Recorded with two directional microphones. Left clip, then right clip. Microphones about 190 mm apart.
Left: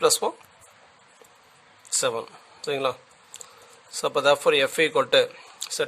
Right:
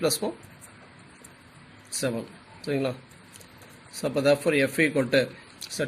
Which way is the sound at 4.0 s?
60° left (ahead or behind).